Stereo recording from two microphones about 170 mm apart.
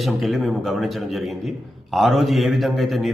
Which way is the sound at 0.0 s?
Centre (ahead or behind).